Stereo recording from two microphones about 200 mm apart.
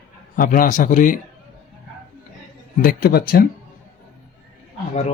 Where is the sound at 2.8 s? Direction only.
45° left (ahead or behind).